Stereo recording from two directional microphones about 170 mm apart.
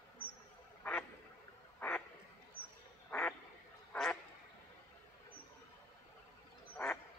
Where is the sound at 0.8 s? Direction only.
5° left (ahead or behind).